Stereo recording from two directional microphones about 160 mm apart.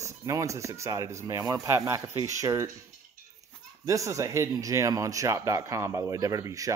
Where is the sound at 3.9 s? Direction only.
20° right (ahead or behind).